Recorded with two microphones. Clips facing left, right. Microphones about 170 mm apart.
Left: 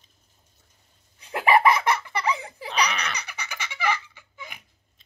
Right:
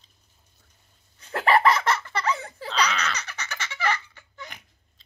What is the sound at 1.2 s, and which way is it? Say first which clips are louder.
Laughter: left 1 dB; 10° left (ahead or behind).